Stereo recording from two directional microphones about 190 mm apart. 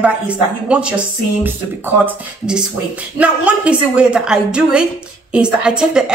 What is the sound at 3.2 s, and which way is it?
Speech, 5° right (ahead or behind).